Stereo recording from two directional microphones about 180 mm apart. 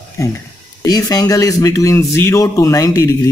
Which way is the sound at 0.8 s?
20° left (ahead or behind).